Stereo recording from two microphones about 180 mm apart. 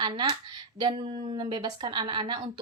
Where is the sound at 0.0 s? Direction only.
25° right (ahead or behind).